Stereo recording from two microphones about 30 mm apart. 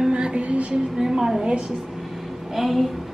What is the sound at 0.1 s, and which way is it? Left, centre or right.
Music, right.